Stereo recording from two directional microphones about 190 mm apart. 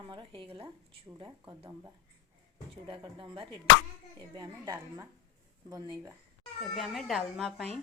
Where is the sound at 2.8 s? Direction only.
25° right (ahead or behind).